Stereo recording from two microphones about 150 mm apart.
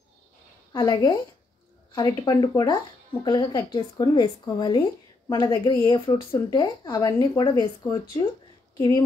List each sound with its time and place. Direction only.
0.7 s speech: 30° left (ahead or behind)